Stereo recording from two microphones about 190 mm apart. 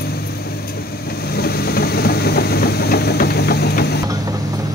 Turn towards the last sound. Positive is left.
turn(degrees=60)  # may be behind; listen again after turning